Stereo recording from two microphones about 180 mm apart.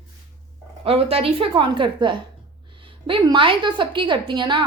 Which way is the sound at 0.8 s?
35° right (ahead or behind).